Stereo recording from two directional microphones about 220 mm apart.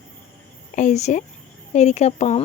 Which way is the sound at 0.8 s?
30° left (ahead or behind).